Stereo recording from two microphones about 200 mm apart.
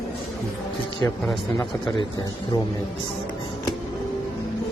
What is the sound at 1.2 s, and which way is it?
Speech, centre (ahead or behind).